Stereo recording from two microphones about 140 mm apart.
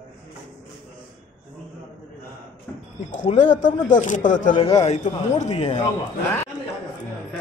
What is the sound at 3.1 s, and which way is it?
Speech, 60° left (ahead or behind).